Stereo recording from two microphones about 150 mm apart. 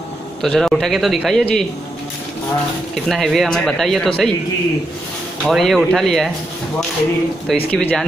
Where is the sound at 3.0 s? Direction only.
Centre (ahead or behind).